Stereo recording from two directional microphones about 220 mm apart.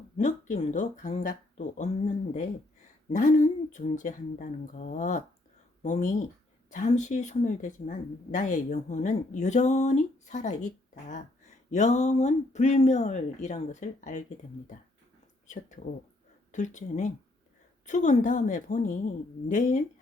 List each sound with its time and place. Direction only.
0.2 s speech: 35° left (ahead or behind)
15.4 s speech: 35° left (ahead or behind)